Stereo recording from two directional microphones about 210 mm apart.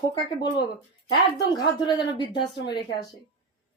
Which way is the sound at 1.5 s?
20° left (ahead or behind).